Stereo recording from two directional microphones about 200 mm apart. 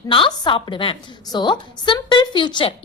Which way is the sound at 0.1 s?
25° left (ahead or behind).